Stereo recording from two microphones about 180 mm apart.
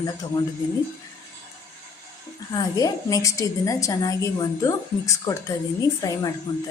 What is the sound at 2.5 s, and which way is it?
A woman's voice, 20° left (ahead or behind).